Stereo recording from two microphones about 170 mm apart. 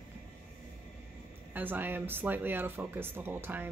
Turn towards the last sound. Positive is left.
turn(degrees=-10)  # may be behind; listen again after turning